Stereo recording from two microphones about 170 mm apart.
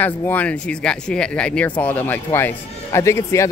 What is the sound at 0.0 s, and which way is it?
Speech, 10° left (ahead or behind).